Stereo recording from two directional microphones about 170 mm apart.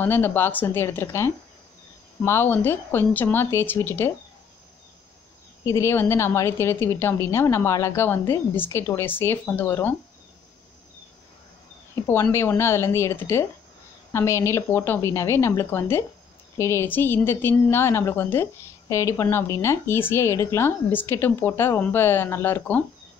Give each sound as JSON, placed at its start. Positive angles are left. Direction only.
{"t": 0.0, "sound": "a woman's voice", "side_deg": 10}
{"t": 5.7, "sound": "a woman's voice", "side_deg": 15}
{"t": 11.9, "sound": "a woman's voice", "side_deg": 15}